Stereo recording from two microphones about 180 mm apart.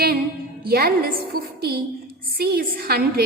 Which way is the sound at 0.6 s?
55° right (ahead or behind).